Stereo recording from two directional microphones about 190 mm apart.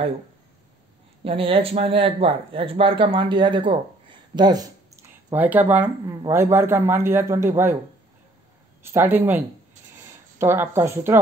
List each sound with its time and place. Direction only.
1.2 s speech: 30° right (ahead or behind); by 7.7 s 15° right (ahead or behind)
8.8 s speech: 10° right (ahead or behind)
10.4 s speech: 10° right (ahead or behind)